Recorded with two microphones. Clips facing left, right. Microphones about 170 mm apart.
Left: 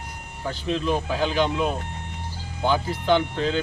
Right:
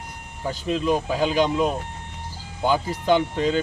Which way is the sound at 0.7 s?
10° right (ahead or behind).